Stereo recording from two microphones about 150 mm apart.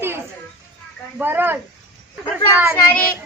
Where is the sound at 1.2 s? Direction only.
15° right (ahead or behind).